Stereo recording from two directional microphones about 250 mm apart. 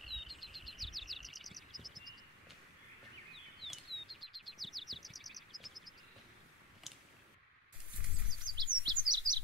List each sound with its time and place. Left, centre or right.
0.0 s chirp: centre
3.6 s chirp: centre
4.0 s bird: centre
8.5 s chirp: centre